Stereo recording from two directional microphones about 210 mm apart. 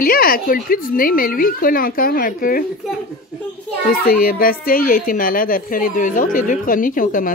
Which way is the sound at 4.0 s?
45° left (ahead or behind).